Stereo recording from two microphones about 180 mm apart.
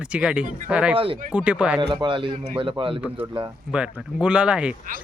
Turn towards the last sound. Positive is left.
turn(degrees=-5)  # may be behind; listen again after turning